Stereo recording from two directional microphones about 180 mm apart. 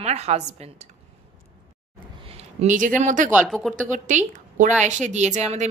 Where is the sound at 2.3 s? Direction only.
35° right (ahead or behind).